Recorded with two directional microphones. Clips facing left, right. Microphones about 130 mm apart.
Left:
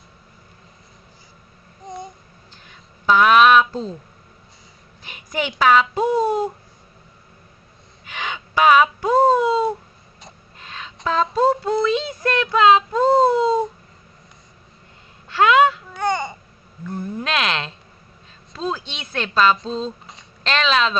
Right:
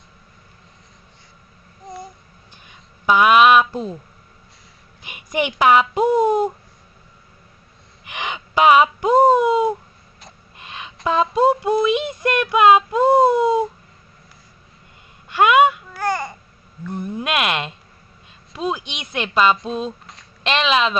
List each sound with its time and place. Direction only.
1.9 s babbling: centre (ahead or behind)
2.5 s a sound: 10° right (ahead or behind)
5.0 s a child's voice: 15° right (ahead or behind)
8.1 s speech: 15° right (ahead or behind)
10.6 s a sound: 10° right (ahead or behind)
11.0 s speech: 5° right (ahead or behind)
15.2 s babbling: 10° right (ahead or behind)
16.9 s speech: 15° right (ahead or behind)